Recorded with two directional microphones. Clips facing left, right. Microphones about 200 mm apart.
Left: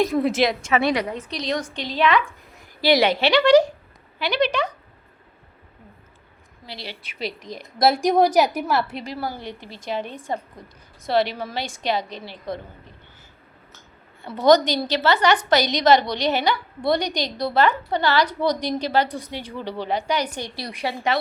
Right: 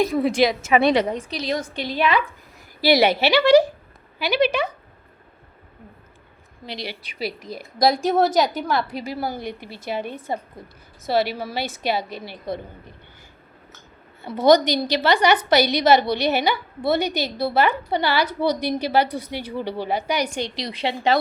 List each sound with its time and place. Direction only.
0.0 s a woman's voice: centre (ahead or behind)
0.7 s a woman's voice: 20° right (ahead or behind)
1.2 s a woman's voice: 5° right (ahead or behind)
6.7 s a woman's voice: 15° right (ahead or behind)
7.8 s a woman's voice: 5° left (ahead or behind)
9.1 s a woman's voice: 10° right (ahead or behind)
14.3 s a woman's voice: 10° right (ahead or behind)
20.6 s a woman's voice: 25° right (ahead or behind)